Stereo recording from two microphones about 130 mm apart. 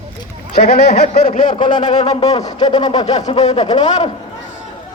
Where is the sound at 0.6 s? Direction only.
60° left (ahead or behind); by 1.8 s 40° left (ahead or behind).